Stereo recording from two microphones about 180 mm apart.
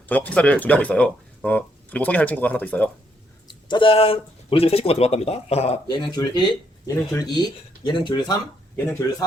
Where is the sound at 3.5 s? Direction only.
25° left (ahead or behind).